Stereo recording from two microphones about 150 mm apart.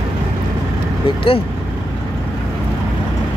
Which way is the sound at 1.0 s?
35° left (ahead or behind).